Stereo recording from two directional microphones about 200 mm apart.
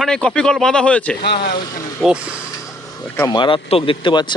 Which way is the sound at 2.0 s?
5° right (ahead or behind).